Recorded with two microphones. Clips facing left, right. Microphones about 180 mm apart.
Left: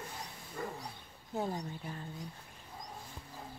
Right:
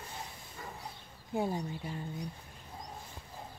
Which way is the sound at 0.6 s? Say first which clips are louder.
Left 6 dB; 55° left (ahead or behind).